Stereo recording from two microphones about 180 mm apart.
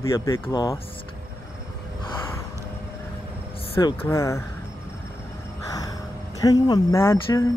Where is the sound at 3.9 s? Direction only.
15° left (ahead or behind).